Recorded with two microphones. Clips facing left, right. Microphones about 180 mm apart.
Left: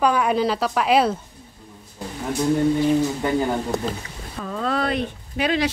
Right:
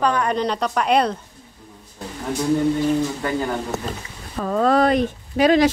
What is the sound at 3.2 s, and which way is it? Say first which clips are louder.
Speech: left 2 dB; 15° left (ahead or behind).